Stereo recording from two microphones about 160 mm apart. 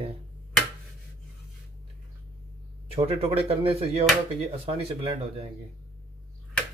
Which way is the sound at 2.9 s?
35° right (ahead or behind).